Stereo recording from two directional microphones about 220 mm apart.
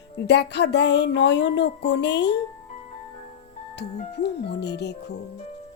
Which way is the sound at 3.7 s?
50° left (ahead or behind).